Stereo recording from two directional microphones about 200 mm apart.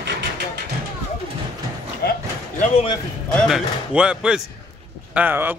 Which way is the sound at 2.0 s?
50° left (ahead or behind).